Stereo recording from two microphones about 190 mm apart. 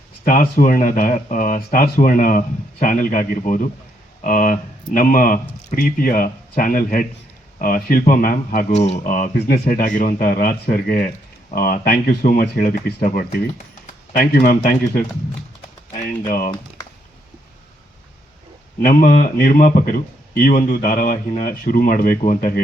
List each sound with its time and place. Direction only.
0.3 s speech: 45° left (ahead or behind)
16.3 s speech: 50° left (ahead or behind)
18.8 s speech: 50° left (ahead or behind)